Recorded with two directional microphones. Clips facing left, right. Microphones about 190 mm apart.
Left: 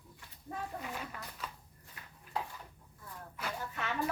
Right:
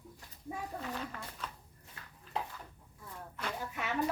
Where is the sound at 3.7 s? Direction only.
10° right (ahead or behind).